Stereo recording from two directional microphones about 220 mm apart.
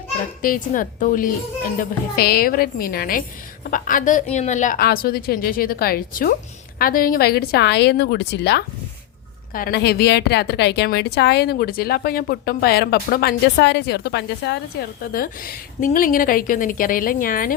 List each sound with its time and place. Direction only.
0.4 s a woman's voice: 40° left (ahead or behind)